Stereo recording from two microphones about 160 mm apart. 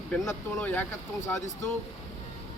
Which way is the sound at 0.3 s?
10° left (ahead or behind).